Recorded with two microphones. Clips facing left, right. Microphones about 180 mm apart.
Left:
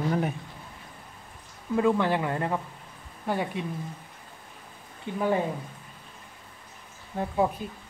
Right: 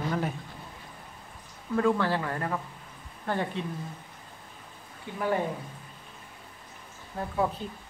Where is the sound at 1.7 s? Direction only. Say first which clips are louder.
Left 2 dB; 15° left (ahead or behind).